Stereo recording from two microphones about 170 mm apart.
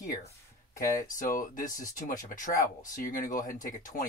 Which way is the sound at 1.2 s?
55° left (ahead or behind).